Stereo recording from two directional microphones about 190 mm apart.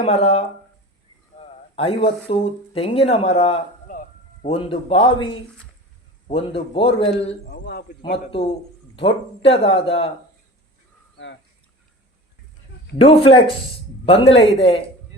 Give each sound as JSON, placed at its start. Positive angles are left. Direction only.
{"t": 0.0, "sound": "speech", "side_deg": 30}
{"t": 1.4, "sound": "a sound", "side_deg": 30}
{"t": 2.3, "sound": "speech", "side_deg": 30}
{"t": 3.9, "sound": "a sound", "side_deg": 45}
{"t": 4.4, "sound": "speech", "side_deg": 30}
{"t": 6.2, "sound": "speech", "side_deg": 30}
{"t": 7.5, "sound": "a man's voice", "side_deg": 60}
{"t": 8.0, "sound": "speech", "side_deg": 30}
{"t": 13.0, "sound": "speech", "side_deg": 30}